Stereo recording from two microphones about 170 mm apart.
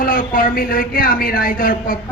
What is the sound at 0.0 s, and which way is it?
Speech, 55° left (ahead or behind).